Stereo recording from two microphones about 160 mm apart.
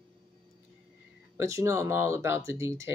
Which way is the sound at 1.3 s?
20° right (ahead or behind).